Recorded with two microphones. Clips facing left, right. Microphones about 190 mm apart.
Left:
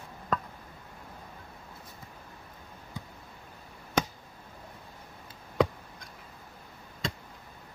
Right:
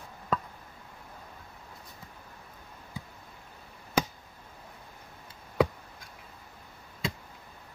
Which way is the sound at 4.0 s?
10° right (ahead or behind).